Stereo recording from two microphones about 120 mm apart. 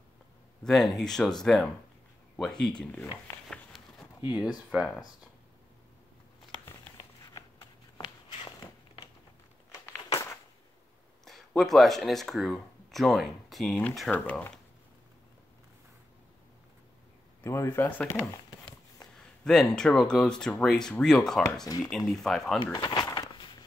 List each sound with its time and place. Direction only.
0.7 s speech: centre (ahead or behind)
2.3 s a sound: 5° left (ahead or behind)
4.2 s speech: 10° right (ahead or behind)
9.7 s a sound: 30° left (ahead or behind)
11.2 s speech: centre (ahead or behind)
14.1 s speech: 15° left (ahead or behind)
17.4 s speech: 20° left (ahead or behind)
19.1 s speech: 5° left (ahead or behind)
22.6 s speech: 35° left (ahead or behind)
23.1 s walk: 35° left (ahead or behind)